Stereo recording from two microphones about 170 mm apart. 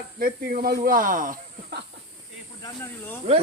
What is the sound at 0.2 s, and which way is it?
Speech, 60° right (ahead or behind).